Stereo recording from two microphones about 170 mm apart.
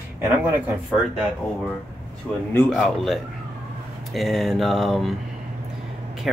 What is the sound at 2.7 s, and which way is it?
Speech, centre (ahead or behind).